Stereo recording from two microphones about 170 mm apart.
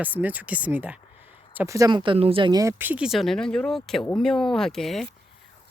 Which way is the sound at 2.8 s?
10° right (ahead or behind).